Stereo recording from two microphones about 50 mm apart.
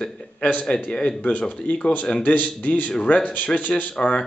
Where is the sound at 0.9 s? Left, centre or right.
Centre.